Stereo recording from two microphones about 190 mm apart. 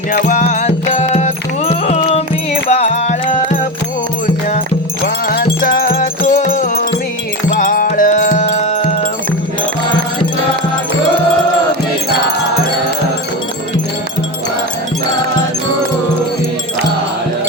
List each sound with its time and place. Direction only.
0.1 s music: 45° left (ahead or behind)
5.0 s music: 50° left (ahead or behind); by 9.0 s 35° left (ahead or behind)